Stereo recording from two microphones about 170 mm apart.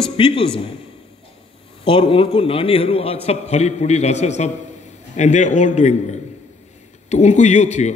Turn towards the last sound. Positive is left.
turn(degrees=40)  # may be behind; listen again after turning